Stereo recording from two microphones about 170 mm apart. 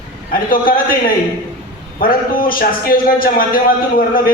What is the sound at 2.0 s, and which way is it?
A man's voice, 55° left (ahead or behind).